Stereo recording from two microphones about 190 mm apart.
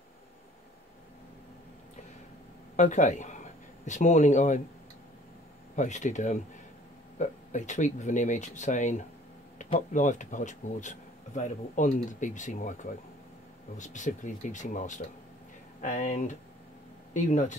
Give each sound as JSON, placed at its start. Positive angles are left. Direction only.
{"t": 2.7, "sound": "speech", "side_deg": 40}
{"t": 5.8, "sound": "speech", "side_deg": 40}